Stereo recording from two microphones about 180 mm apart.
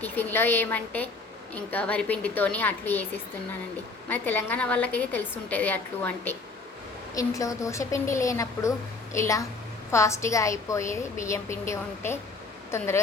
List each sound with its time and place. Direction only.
0.0 s a woman's voice: 10° left (ahead or behind)